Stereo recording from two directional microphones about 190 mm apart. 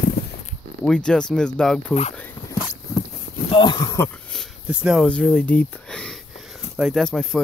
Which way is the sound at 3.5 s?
25° left (ahead or behind).